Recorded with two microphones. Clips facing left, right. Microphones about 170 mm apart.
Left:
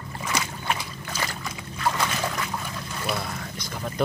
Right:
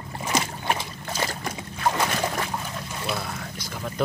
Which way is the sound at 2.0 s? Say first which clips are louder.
Right 2 dB; 35° right (ahead or behind).